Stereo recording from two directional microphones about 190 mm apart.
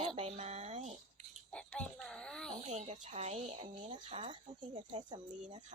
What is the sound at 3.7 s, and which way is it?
Speech, 25° right (ahead or behind).